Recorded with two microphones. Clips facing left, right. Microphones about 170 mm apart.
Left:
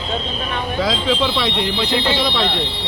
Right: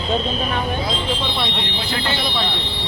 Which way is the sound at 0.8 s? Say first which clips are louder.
Left 5 dB; 90° left.